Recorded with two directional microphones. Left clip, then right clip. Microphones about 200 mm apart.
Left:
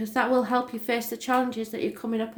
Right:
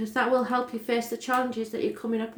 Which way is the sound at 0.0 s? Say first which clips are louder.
Left 1 dB; 40° left (ahead or behind).